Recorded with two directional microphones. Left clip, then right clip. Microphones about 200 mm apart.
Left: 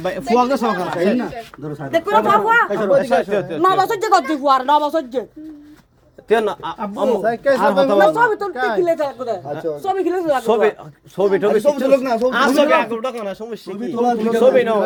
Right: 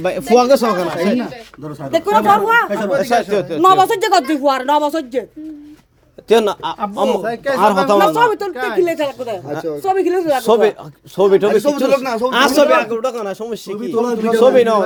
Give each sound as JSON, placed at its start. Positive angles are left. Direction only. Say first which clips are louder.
{"t": 0.0, "sound": "speech", "louder": "right 4 dB", "side_deg": -40}
{"t": 2.5, "sound": "speech", "louder": "right 1 dB", "side_deg": -50}
{"t": 3.0, "sound": "speech", "louder": "right 2 dB", "side_deg": -40}
{"t": 6.2, "sound": "speech", "louder": "right 4 dB", "side_deg": -60}
{"t": 7.2, "sound": "speech", "louder": "left 3 dB", "side_deg": 5}
{"t": 7.6, "sound": "speech", "louder": "right 3 dB", "side_deg": -55}
{"t": 12.5, "sound": "speech", "louder": "right 3 dB", "side_deg": -30}
{"t": 13.4, "sound": "speech", "louder": "right 4 dB", "side_deg": -70}
{"t": 14.0, "sound": "speech", "louder": "right 1 dB", "side_deg": -45}